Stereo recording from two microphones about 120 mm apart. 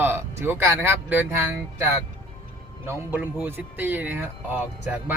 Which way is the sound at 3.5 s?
15° right (ahead or behind).